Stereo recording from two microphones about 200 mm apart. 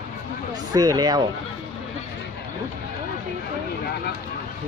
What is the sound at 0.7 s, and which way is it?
Speech, 20° right (ahead or behind).